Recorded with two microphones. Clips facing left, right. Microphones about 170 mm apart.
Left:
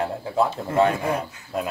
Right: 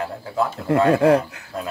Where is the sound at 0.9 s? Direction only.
70° right (ahead or behind).